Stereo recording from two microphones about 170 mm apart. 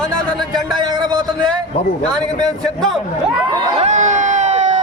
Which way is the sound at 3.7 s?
40° right (ahead or behind).